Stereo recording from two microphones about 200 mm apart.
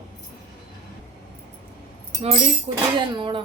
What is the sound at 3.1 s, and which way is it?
Music, 25° right (ahead or behind).